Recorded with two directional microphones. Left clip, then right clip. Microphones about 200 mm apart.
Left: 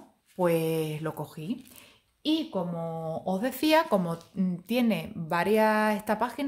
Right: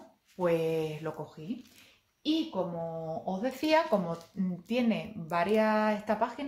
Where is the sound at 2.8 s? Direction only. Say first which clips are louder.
Left 3 dB; 55° left (ahead or behind).